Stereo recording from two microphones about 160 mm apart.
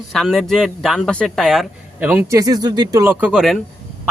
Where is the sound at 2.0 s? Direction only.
10° right (ahead or behind).